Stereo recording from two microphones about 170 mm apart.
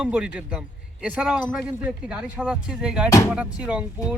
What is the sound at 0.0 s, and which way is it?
A man's voice, 5° right (ahead or behind).